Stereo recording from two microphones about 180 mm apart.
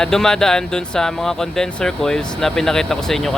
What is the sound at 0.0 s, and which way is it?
Speech, 5° left (ahead or behind).